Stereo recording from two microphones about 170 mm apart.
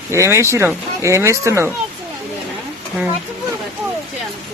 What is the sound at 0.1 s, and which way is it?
Speech, 15° right (ahead or behind).